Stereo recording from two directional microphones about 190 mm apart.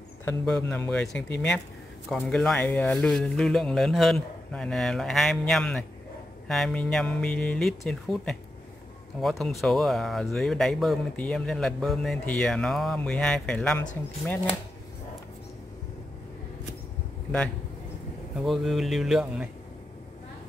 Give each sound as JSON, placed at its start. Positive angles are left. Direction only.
{"t": 0.3, "sound": "speech", "side_deg": 5}
{"t": 18.4, "sound": "speech", "side_deg": 0}